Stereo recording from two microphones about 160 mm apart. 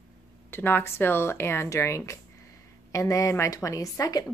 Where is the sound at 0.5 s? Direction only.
15° left (ahead or behind).